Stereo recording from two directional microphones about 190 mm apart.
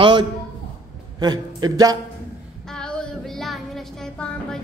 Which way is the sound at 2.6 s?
5° left (ahead or behind).